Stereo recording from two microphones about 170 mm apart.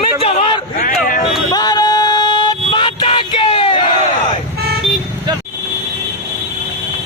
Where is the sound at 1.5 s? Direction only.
25° left (ahead or behind).